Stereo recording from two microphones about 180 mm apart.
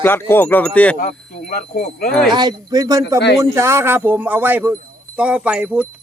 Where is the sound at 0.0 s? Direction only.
10° left (ahead or behind).